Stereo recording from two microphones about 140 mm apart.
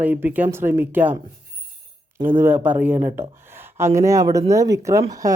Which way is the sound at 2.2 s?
15° right (ahead or behind).